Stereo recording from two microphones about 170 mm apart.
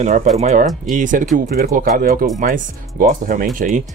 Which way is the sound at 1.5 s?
60° right (ahead or behind).